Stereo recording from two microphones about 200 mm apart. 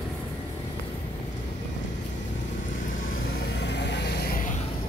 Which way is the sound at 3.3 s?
60° left (ahead or behind).